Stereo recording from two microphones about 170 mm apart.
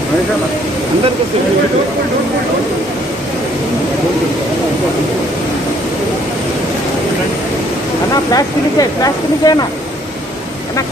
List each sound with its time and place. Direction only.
8.3 s speech: 20° left (ahead or behind)